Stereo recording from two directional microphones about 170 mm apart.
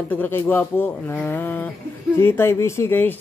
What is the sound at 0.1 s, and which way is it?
Speech, 10° left (ahead or behind).